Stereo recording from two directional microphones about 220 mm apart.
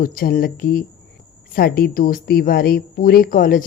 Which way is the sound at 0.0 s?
40° left (ahead or behind).